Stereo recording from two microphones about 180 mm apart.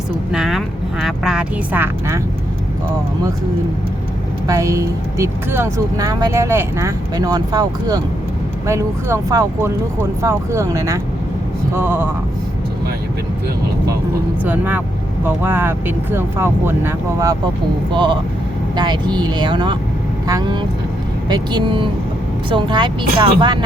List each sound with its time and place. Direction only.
0.3 s speech: centre (ahead or behind)
4.4 s speech: 15° right (ahead or behind)
14.4 s speech: 10° right (ahead or behind)
17.9 s speech: 25° right (ahead or behind)